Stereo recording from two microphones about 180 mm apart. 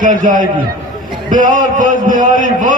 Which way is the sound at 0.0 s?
45° right (ahead or behind).